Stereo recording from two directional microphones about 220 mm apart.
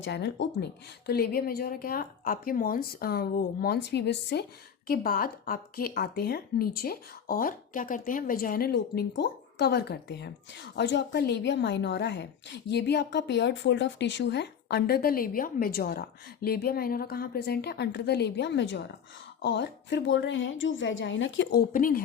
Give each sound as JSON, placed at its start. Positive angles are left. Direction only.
{"t": 0.0, "sound": "a woman's voice", "side_deg": 55}
{"t": 4.9, "sound": "a woman's voice", "side_deg": 40}